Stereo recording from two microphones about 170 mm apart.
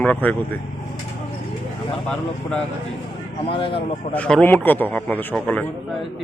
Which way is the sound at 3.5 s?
30° left (ahead or behind).